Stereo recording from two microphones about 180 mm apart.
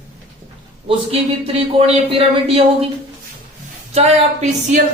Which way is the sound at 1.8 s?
30° right (ahead or behind).